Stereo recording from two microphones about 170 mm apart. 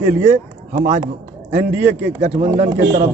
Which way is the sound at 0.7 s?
45° right (ahead or behind).